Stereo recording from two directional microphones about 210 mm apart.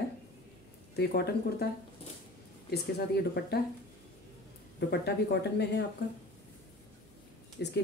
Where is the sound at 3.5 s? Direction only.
50° left (ahead or behind).